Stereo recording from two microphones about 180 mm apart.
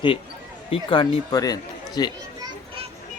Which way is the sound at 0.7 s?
25° left (ahead or behind).